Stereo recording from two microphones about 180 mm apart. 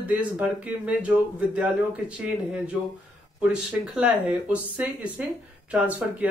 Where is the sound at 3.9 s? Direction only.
5° right (ahead or behind).